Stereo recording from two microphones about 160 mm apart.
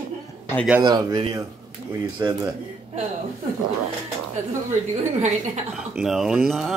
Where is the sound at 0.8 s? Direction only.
25° right (ahead or behind).